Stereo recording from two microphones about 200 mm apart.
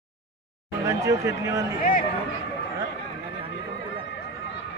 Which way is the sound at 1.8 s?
45° left (ahead or behind).